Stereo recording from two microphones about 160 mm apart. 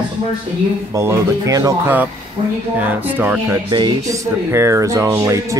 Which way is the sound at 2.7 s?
10° right (ahead or behind).